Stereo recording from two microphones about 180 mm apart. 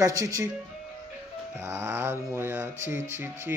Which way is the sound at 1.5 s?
15° right (ahead or behind).